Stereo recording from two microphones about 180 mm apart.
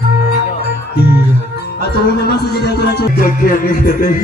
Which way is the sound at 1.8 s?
60° left (ahead or behind).